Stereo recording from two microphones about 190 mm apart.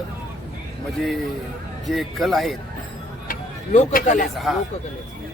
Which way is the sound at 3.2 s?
45° left (ahead or behind).